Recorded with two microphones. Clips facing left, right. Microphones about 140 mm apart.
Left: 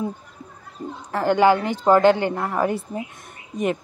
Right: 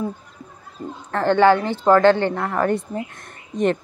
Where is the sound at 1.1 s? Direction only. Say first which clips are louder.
Right 2 dB; 10° left (ahead or behind).